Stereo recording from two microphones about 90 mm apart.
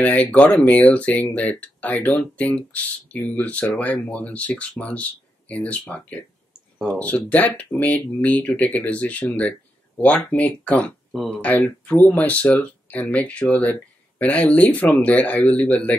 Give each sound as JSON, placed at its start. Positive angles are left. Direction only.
{"t": 0.0, "sound": "speech", "side_deg": 15}